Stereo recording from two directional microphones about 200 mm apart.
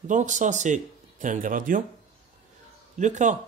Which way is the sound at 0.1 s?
40° right (ahead or behind).